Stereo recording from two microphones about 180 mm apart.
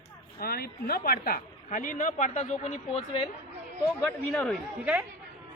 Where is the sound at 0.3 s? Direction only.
55° left (ahead or behind); by 3.0 s 40° left (ahead or behind).